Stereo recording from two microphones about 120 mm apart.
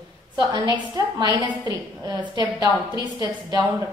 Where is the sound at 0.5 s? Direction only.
35° right (ahead or behind).